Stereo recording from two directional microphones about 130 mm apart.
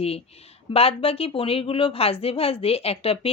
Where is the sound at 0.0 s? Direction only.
50° left (ahead or behind).